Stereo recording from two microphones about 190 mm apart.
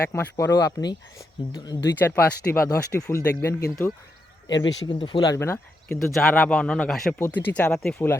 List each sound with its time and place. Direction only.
0.1 s speech: 10° left (ahead or behind)
6.0 s speech: centre (ahead or behind)